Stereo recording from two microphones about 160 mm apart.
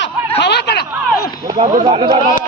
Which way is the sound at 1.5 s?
25° right (ahead or behind).